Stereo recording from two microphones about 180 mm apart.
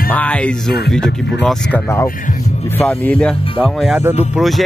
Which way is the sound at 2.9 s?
10° left (ahead or behind).